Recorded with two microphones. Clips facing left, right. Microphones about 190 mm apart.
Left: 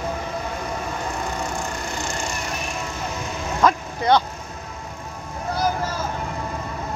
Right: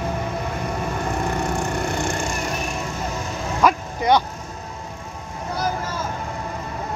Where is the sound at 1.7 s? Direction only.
60° right (ahead or behind).